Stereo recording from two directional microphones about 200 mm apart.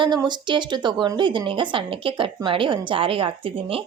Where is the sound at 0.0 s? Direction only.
20° right (ahead or behind).